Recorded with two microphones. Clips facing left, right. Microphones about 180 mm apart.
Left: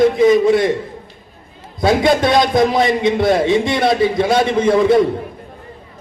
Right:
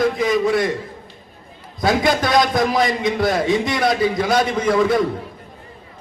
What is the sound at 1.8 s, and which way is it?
A man's voice, 25° left (ahead or behind).